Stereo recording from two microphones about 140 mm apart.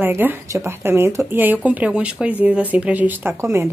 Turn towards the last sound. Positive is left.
turn(degrees=-15)  # may be behind; listen again after turning